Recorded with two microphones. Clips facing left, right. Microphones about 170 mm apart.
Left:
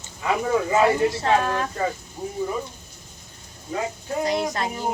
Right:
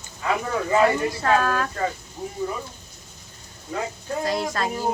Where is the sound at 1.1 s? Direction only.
25° left (ahead or behind).